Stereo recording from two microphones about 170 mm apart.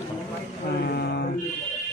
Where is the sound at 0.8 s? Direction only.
75° left (ahead or behind).